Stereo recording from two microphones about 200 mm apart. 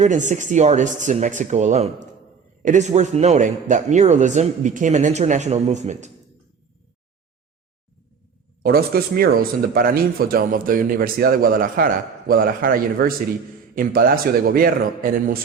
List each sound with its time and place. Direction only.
0.0 s a man's voice: 40° right (ahead or behind)
8.6 s speech: 50° right (ahead or behind)